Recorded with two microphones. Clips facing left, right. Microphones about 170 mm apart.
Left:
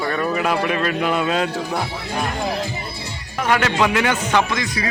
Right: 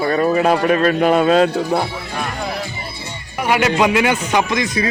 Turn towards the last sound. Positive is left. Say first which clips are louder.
# right 4 dB
turn(degrees=-20)  # may be behind; listen again after turning